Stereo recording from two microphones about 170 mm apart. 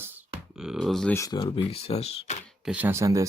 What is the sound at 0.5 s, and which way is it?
Speech, 5° right (ahead or behind).